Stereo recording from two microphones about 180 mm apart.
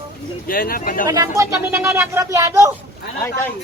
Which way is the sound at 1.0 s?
20° right (ahead or behind).